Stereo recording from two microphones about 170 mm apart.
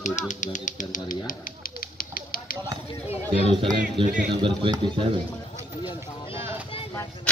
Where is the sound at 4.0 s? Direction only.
30° right (ahead or behind).